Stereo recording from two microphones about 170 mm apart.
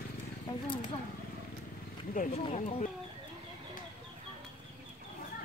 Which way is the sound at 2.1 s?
50° left (ahead or behind).